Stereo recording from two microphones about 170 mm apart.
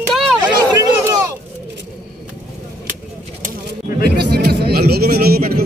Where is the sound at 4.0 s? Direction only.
70° right (ahead or behind).